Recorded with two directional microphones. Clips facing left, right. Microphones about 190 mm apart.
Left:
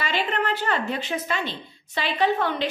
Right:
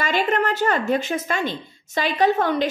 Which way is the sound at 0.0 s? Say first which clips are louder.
Right 5 dB; 45° right (ahead or behind).